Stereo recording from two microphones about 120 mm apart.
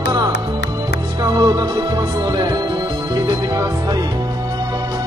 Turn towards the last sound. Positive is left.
turn(degrees=-30)  # may be behind; listen again after turning